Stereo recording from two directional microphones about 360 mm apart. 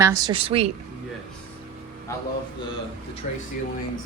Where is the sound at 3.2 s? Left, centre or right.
Centre.